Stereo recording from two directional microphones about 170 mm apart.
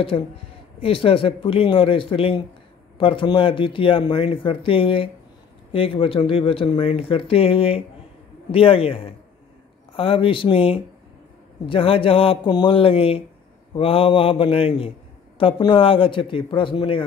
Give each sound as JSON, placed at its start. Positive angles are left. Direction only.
{"t": 0.1, "sound": "speech", "side_deg": 30}